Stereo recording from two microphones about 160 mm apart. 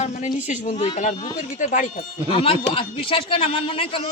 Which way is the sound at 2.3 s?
35° left (ahead or behind).